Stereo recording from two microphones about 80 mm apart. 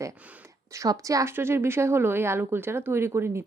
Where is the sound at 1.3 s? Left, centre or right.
Right.